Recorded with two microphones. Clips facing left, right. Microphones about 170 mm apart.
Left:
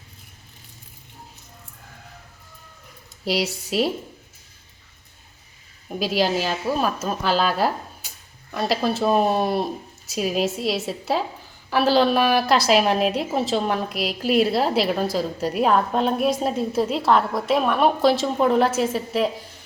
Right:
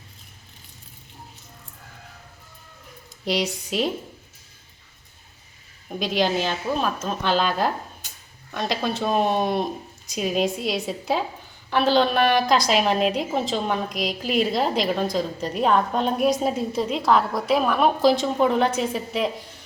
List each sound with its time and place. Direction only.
3.2 s a woman's voice: 5° left (ahead or behind)
5.9 s a woman's voice: 5° left (ahead or behind)